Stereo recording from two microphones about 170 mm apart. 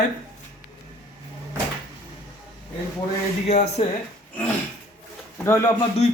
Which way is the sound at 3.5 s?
40° left (ahead or behind).